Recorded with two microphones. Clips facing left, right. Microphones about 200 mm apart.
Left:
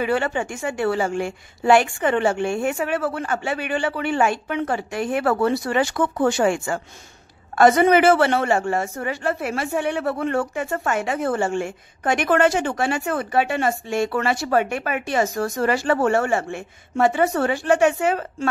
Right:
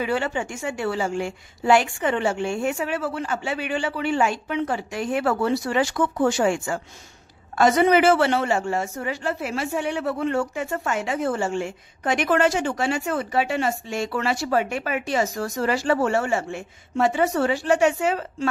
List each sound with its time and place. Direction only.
0.0 s a woman's voice: 55° left (ahead or behind)